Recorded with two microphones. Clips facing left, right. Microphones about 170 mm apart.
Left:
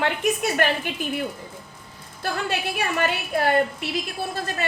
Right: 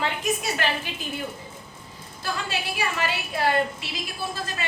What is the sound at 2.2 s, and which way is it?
A woman's voice, 55° left (ahead or behind).